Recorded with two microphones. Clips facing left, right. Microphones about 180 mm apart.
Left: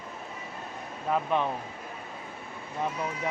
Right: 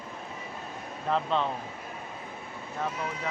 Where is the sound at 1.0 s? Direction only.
10° left (ahead or behind).